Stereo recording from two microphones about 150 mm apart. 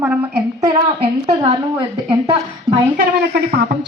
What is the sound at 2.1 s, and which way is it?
Speech, 35° right (ahead or behind).